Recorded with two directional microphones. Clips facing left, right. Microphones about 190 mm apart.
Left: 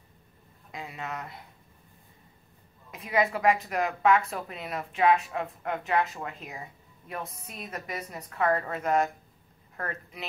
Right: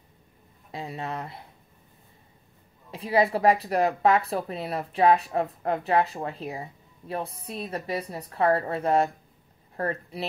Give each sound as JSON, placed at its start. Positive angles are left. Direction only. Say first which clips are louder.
{"t": 0.7, "sound": "a woman's voice", "louder": "right 4 dB", "side_deg": -30}
{"t": 2.9, "sound": "a woman's voice", "louder": "right 4 dB", "side_deg": -30}